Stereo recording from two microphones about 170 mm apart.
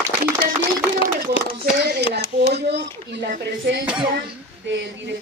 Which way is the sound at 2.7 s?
90° right.